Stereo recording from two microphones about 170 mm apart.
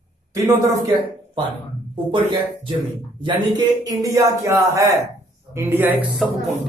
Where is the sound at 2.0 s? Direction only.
30° right (ahead or behind); by 6.2 s 10° right (ahead or behind).